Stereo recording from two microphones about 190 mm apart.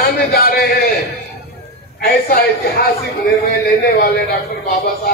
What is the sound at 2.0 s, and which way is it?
Speech, 55° left (ahead or behind).